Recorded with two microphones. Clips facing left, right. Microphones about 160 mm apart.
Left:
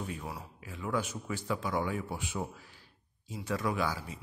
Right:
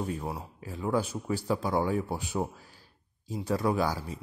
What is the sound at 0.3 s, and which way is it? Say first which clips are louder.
Speech: right 5 dB; 30° right (ahead or behind).